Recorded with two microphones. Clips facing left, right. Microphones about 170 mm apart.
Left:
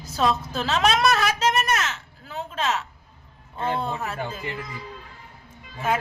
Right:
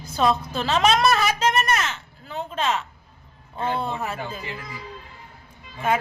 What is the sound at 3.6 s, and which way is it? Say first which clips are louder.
Speech: right 1 dB; centre (ahead or behind).